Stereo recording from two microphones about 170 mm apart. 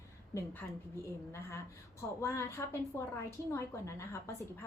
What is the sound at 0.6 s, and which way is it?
A woman's voice, 15° left (ahead or behind).